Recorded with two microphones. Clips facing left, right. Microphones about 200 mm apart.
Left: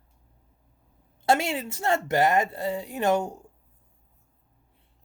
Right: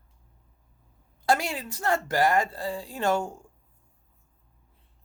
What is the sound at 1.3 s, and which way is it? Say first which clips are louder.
Speech: left 2 dB; 25° left (ahead or behind).